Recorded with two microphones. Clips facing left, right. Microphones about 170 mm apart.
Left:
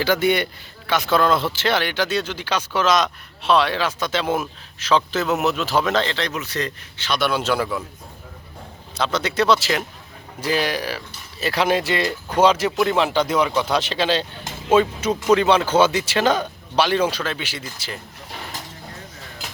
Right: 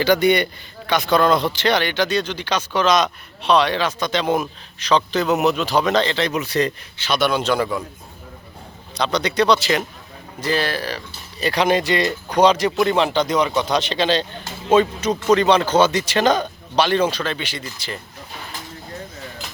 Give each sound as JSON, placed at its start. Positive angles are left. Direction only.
{"t": 0.0, "sound": "speech", "side_deg": 5}
{"t": 6.3, "sound": "speech", "side_deg": -15}
{"t": 7.2, "sound": "speech", "side_deg": 5}
{"t": 9.0, "sound": "speech", "side_deg": 5}